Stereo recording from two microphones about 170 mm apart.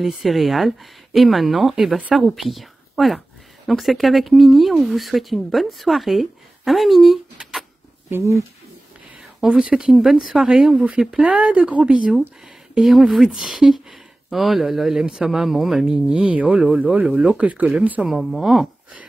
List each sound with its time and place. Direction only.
0.0 s speech: centre (ahead or behind)
8.1 s speech: 15° right (ahead or behind)
9.4 s speech: 5° right (ahead or behind)